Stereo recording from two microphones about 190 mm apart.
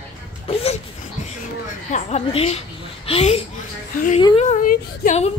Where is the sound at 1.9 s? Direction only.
35° left (ahead or behind).